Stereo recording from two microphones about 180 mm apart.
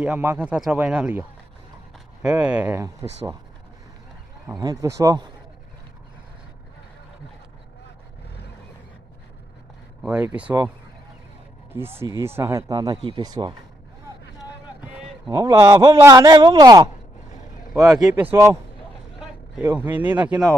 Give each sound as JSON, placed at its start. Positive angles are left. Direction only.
{"t": 0.0, "sound": "speech", "side_deg": -10}
{"t": 2.2, "sound": "speech", "side_deg": -5}
{"t": 4.5, "sound": "speech", "side_deg": -20}
{"t": 10.0, "sound": "speech", "side_deg": -5}
{"t": 11.7, "sound": "speech", "side_deg": -15}
{"t": 14.8, "sound": "a sound", "side_deg": -5}
{"t": 15.3, "sound": "speech", "side_deg": -20}
{"t": 17.7, "sound": "speech", "side_deg": 0}
{"t": 19.6, "sound": "speech", "side_deg": -10}